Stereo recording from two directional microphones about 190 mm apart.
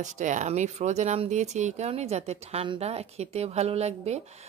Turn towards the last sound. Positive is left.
turn(degrees=-35)  # may be behind; listen again after turning